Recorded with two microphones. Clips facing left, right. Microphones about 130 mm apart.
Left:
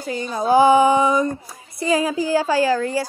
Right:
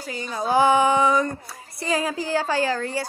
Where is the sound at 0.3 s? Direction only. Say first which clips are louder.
Left 5 dB; 20° left (ahead or behind).